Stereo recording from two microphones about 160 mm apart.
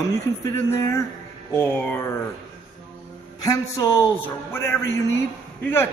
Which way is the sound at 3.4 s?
20° left (ahead or behind).